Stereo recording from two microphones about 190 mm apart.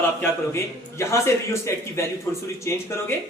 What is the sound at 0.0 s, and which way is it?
A man's voice, 15° left (ahead or behind).